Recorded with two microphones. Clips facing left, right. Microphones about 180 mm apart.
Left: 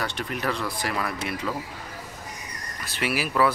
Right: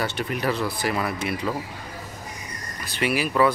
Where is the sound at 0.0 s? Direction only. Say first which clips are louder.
Right 3 dB; 5° right (ahead or behind).